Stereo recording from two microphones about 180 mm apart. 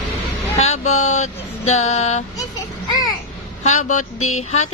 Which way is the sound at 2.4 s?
20° left (ahead or behind).